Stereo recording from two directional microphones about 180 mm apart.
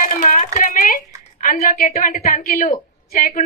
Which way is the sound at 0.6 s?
50° left (ahead or behind).